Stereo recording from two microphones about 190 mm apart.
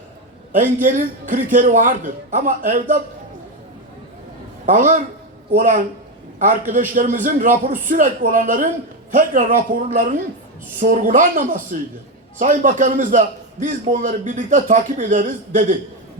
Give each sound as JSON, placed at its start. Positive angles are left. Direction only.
{"t": 0.5, "sound": "a man's voice", "side_deg": -40}
{"t": 4.6, "sound": "a man's voice", "side_deg": -40}